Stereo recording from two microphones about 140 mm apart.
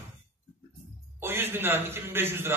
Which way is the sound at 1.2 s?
15° right (ahead or behind).